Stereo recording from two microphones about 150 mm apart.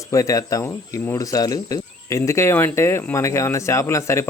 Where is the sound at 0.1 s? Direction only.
20° left (ahead or behind).